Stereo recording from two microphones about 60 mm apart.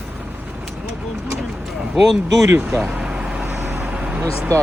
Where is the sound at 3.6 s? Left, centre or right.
Right.